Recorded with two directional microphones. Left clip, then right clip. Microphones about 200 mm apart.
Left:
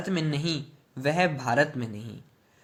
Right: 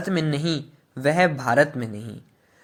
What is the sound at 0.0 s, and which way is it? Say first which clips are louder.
A man's voice: right 5 dB; 30° right (ahead or behind).